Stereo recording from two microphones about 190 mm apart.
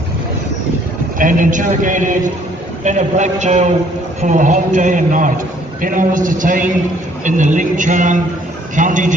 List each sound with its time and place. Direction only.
1.1 s a man's voice: 45° right (ahead or behind)